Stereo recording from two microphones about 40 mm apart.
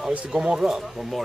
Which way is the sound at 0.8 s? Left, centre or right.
Centre.